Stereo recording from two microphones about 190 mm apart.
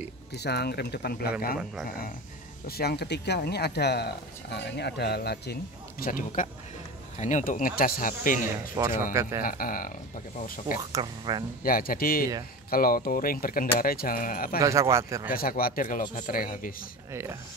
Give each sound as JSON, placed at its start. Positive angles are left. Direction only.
{"t": 0.3, "sound": "speech", "side_deg": 60}
{"t": 2.6, "sound": "speech", "side_deg": 55}
{"t": 8.7, "sound": "speech", "side_deg": -15}
{"t": 9.4, "sound": "speech", "side_deg": 50}
{"t": 10.8, "sound": "speech", "side_deg": -20}
{"t": 11.6, "sound": "speech", "side_deg": 50}
{"t": 14.6, "sound": "speech", "side_deg": -15}
{"t": 15.2, "sound": "speech", "side_deg": 50}
{"t": 17.1, "sound": "speech", "side_deg": -15}